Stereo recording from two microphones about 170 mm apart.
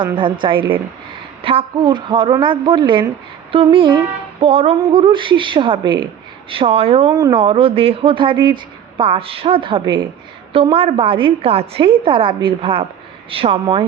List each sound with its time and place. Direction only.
0.2 s a woman's voice: 30° right (ahead or behind)
7.1 s speech: 20° right (ahead or behind)